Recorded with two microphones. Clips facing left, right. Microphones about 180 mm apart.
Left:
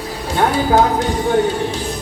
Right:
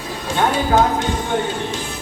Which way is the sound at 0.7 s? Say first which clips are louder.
Left 2 dB; 35° left (ahead or behind).